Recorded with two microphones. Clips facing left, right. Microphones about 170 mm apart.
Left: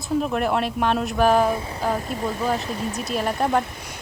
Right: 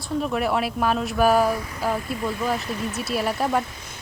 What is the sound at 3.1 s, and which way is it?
Speech, 5° right (ahead or behind).